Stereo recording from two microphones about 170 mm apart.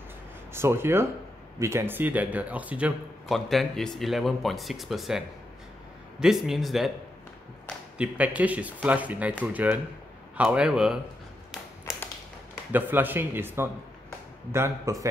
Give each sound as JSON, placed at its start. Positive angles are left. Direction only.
{"t": 0.5, "sound": "speech", "side_deg": -15}
{"t": 8.0, "sound": "speech", "side_deg": -10}
{"t": 12.7, "sound": "speech", "side_deg": -10}